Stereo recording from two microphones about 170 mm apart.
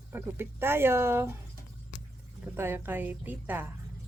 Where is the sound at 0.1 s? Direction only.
15° right (ahead or behind).